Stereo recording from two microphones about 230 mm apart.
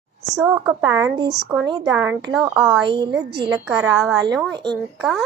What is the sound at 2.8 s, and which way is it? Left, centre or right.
Speech, centre.